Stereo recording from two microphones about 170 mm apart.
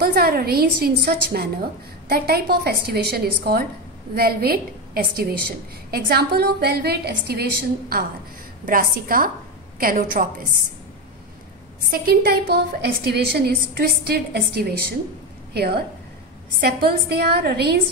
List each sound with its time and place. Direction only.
0.0 s a woman's voice: 65° right (ahead or behind)
8.6 s a woman's voice: 55° right (ahead or behind)
11.9 s a woman's voice: 60° right (ahead or behind)